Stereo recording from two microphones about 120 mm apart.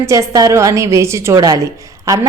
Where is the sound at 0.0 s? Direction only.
25° right (ahead or behind).